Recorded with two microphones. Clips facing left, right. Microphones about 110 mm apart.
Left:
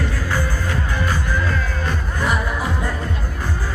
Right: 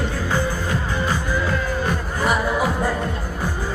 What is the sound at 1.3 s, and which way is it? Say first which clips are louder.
Music: right 1 dB; 10° right (ahead or behind).